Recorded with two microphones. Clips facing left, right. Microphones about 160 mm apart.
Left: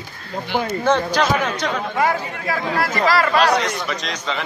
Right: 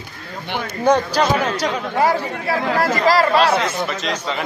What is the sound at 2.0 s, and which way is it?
Speech, 30° right (ahead or behind).